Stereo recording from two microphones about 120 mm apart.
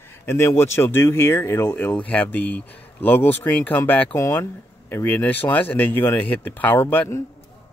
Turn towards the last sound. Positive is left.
turn(degrees=20)  # may be behind; listen again after turning